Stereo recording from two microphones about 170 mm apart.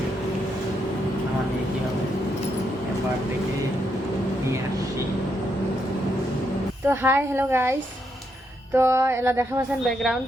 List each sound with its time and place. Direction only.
6.8 s music: 10° right (ahead or behind)
9.8 s speech: centre (ahead or behind)